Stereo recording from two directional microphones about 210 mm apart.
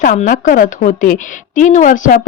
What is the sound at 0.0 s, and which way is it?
A woman's voice, 40° left (ahead or behind).